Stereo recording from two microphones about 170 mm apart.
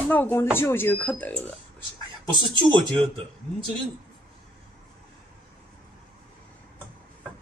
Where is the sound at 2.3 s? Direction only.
30° right (ahead or behind).